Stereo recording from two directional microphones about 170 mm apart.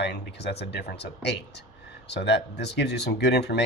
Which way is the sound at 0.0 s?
80° left.